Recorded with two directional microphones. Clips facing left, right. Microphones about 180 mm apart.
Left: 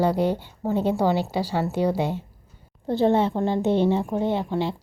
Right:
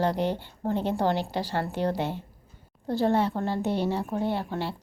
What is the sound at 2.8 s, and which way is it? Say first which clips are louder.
Speech: left 4 dB; 20° left (ahead or behind).